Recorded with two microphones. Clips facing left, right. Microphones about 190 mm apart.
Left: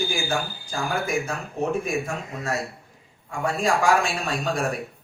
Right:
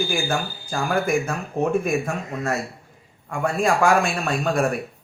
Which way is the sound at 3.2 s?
55° right (ahead or behind).